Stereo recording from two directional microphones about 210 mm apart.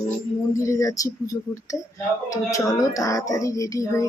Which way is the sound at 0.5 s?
15° left (ahead or behind).